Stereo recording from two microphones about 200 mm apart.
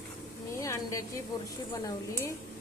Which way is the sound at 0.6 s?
15° left (ahead or behind).